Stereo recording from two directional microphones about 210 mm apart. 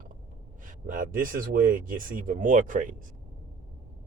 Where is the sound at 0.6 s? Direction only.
40° right (ahead or behind).